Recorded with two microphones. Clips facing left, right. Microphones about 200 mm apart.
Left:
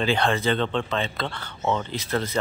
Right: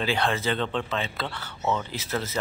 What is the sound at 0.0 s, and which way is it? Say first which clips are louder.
Speech: left 3 dB; 5° right (ahead or behind).